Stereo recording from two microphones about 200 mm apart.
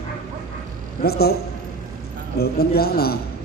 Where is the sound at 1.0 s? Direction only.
50° left (ahead or behind).